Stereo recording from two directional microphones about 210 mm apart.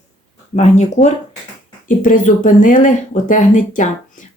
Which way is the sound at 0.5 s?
30° left (ahead or behind).